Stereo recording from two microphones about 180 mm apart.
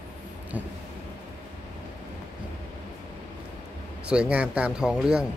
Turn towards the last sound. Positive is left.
turn(degrees=-5)  # may be behind; listen again after turning